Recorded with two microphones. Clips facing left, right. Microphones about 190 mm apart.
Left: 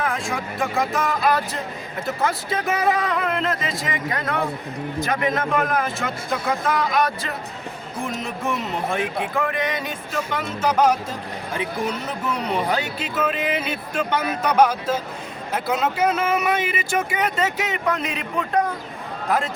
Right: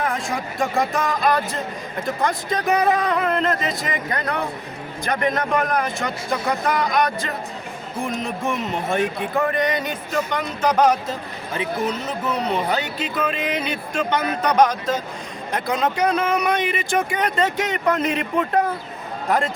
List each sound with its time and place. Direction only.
0.0 s speech: centre (ahead or behind)